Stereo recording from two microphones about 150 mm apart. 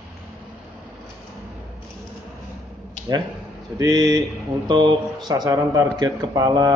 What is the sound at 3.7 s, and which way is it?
Speech, 25° right (ahead or behind).